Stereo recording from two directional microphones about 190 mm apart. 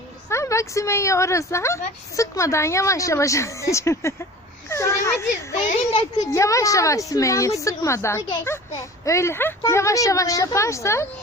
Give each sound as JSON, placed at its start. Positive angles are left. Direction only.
{"t": 0.3, "sound": "a woman's voice", "side_deg": 15}
{"t": 4.7, "sound": "a sound", "side_deg": 15}
{"t": 5.9, "sound": "speech", "side_deg": 30}
{"t": 6.3, "sound": "a woman's voice", "side_deg": 15}